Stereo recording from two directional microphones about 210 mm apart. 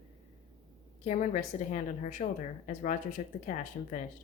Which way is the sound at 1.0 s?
35° left (ahead or behind).